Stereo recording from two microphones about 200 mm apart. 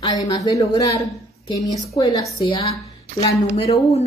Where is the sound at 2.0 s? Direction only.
20° left (ahead or behind).